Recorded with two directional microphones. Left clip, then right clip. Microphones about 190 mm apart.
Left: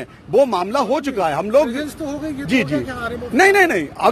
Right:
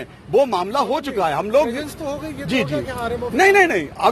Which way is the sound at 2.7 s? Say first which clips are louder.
Left 1 dB; 75° left (ahead or behind).